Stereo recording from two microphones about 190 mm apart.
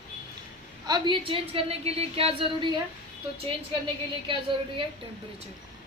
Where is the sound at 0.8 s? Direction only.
20° right (ahead or behind).